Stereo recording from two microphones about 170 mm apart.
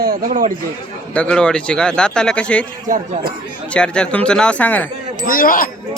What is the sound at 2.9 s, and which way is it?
Speech, 50° right (ahead or behind).